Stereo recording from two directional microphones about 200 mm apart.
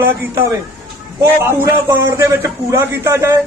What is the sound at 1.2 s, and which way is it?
A man's voice, 15° right (ahead or behind).